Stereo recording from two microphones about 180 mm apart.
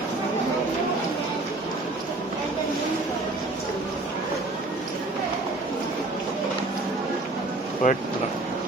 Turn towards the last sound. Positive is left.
turn(degrees=45)  # may be behind; listen again after turning